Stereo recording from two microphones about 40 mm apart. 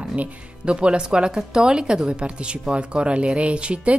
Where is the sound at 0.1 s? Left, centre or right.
Right.